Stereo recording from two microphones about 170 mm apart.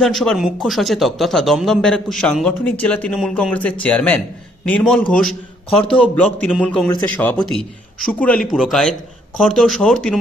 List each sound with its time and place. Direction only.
0.0 s a man's voice: centre (ahead or behind)
5.7 s a man's voice: 35° left (ahead or behind)
5.9 s a man's voice: 10° left (ahead or behind)